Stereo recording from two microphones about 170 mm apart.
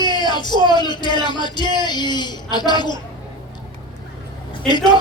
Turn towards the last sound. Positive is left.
turn(degrees=25)  # may be behind; listen again after turning